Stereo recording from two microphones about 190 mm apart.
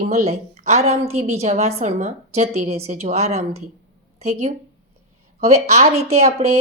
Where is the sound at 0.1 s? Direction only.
35° right (ahead or behind).